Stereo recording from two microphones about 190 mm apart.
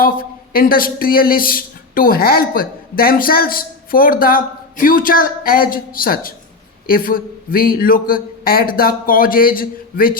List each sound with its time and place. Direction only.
0.0 s speech: 50° left (ahead or behind)